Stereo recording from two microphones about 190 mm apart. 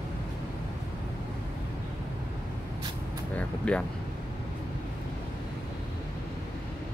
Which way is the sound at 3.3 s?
5° left (ahead or behind).